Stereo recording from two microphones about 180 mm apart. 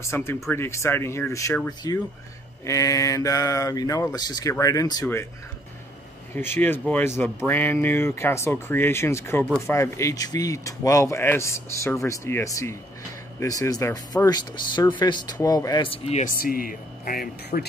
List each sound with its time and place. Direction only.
0.0 s speech: 15° left (ahead or behind)
6.3 s speech: 10° left (ahead or behind); by 16.3 s 35° left (ahead or behind)
16.3 s speech: 55° left (ahead or behind)